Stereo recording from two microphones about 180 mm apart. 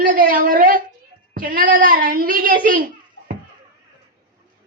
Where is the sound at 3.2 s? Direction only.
75° left (ahead or behind).